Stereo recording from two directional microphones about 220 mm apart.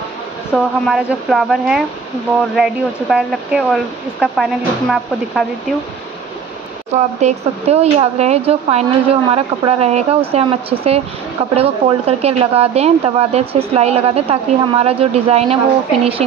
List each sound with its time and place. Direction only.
0.5 s speech: centre (ahead or behind)
7.2 s speech: 30° right (ahead or behind)